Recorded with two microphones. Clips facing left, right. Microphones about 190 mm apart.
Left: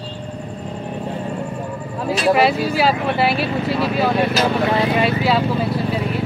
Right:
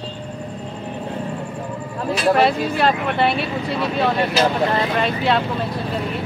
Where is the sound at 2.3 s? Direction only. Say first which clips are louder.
Left 1 dB; 5° left (ahead or behind).